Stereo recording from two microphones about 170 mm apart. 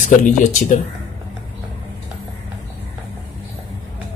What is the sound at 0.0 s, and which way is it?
Speech, 50° left (ahead or behind).